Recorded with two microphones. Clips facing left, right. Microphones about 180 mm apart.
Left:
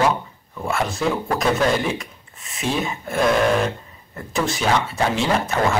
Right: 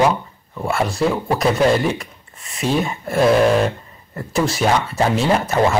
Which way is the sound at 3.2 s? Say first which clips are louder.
Right 4 dB; 30° right (ahead or behind).